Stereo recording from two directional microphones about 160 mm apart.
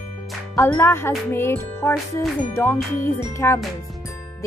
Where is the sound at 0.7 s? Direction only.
15° left (ahead or behind).